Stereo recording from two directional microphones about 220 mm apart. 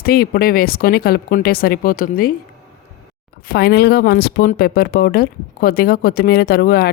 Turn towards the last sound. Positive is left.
turn(degrees=45)  # may be behind; listen again after turning